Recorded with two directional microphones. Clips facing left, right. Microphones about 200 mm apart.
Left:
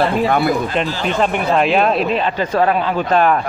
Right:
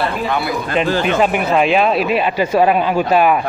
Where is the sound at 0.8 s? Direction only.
55° right (ahead or behind).